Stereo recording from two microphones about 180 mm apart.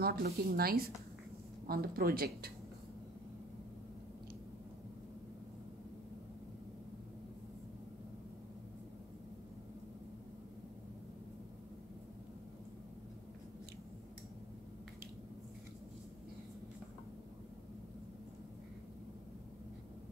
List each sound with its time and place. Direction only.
0.0 s speech: 60° right (ahead or behind)